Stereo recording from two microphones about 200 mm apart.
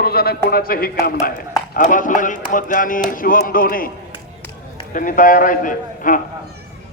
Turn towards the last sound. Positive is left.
turn(degrees=40)  # may be behind; listen again after turning